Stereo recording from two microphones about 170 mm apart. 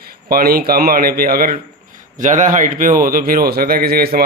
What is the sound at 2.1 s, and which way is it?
A man's voice, 50° right (ahead or behind).